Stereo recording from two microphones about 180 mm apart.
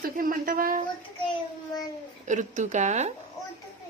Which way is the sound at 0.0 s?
50° right (ahead or behind).